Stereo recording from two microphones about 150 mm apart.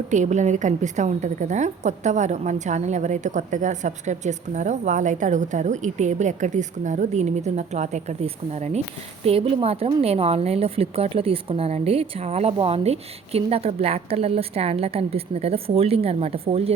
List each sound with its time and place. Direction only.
0.1 s a woman's voice: 50° right (ahead or behind)